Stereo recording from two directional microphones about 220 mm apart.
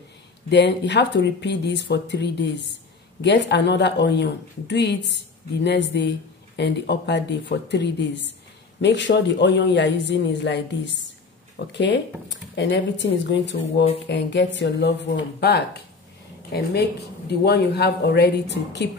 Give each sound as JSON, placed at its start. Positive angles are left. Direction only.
{"t": 0.5, "sound": "speech", "side_deg": 50}